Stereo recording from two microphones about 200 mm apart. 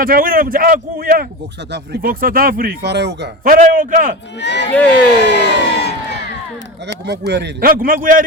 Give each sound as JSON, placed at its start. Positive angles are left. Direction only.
{"t": 0.0, "sound": "speech", "side_deg": -45}
{"t": 3.4, "sound": "speech", "side_deg": -40}
{"t": 4.4, "sound": "speech", "side_deg": 60}
{"t": 5.2, "sound": "crowd", "side_deg": 60}
{"t": 7.0, "sound": "speech", "side_deg": -60}